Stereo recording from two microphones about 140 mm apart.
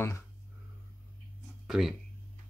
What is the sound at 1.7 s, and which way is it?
Speech, centre (ahead or behind).